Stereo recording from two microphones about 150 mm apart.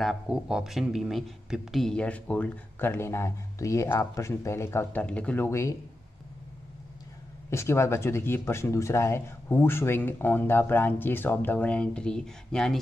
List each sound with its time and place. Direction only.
0.0 s speech: centre (ahead or behind); by 5.8 s 20° left (ahead or behind)
7.4 s speech: 20° left (ahead or behind)